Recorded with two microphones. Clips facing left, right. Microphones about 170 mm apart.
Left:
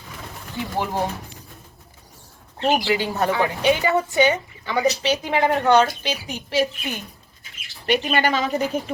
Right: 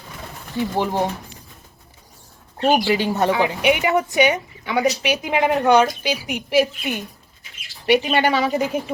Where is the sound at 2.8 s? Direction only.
25° right (ahead or behind).